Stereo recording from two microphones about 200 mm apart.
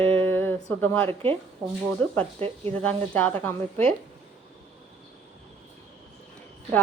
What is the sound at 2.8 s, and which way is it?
Speech, 10° left (ahead or behind).